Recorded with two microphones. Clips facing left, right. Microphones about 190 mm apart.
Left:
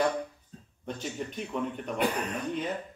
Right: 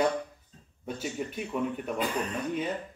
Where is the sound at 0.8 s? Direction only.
5° right (ahead or behind).